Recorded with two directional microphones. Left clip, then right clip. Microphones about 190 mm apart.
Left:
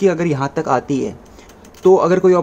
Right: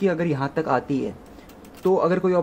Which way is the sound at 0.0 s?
10° left (ahead or behind).